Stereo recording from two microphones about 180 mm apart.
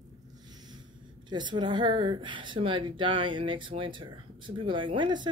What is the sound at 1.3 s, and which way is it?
A woman's voice, 25° right (ahead or behind).